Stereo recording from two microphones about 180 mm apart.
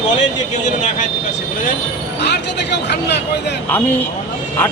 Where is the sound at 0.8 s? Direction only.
45° left (ahead or behind).